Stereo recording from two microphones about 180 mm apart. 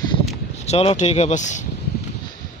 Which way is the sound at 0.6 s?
35° left (ahead or behind).